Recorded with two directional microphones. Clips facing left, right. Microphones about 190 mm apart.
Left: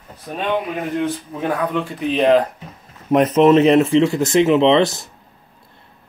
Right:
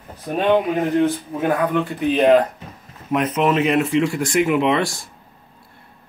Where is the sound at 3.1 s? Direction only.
30° left (ahead or behind).